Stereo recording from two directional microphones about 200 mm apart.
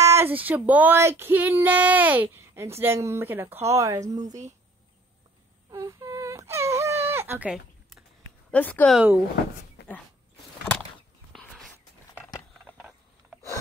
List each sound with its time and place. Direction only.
0.0 s speech: 15° right (ahead or behind)
5.7 s whimper: 15° right (ahead or behind)
8.5 s speech: 10° left (ahead or behind)
8.9 s speech: 10° right (ahead or behind)
9.8 s dog: 55° left (ahead or behind)
11.3 s a sound: centre (ahead or behind)
12.7 s a sound: 5° right (ahead or behind)